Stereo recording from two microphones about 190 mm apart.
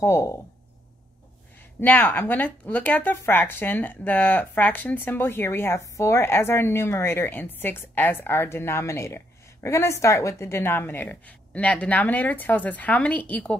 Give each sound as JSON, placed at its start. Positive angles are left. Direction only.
{"t": 0.0, "sound": "a woman's voice", "side_deg": 15}
{"t": 1.8, "sound": "a woman's voice", "side_deg": 10}